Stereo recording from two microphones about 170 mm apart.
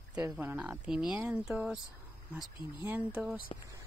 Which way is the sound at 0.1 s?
10° right (ahead or behind).